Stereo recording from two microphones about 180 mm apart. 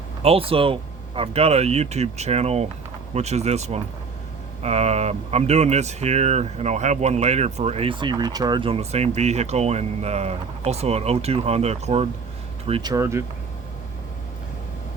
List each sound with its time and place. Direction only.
0.2 s speech: 35° right (ahead or behind)
12.9 s speech: 15° right (ahead or behind)